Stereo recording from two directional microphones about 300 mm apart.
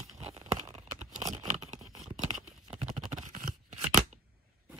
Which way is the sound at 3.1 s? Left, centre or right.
Right.